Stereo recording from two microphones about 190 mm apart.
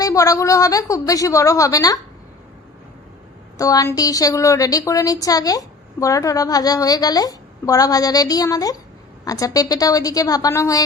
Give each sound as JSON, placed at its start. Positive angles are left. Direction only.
{"t": 0.0, "sound": "a woman's voice", "side_deg": 15}
{"t": 3.6, "sound": "a woman's voice", "side_deg": 20}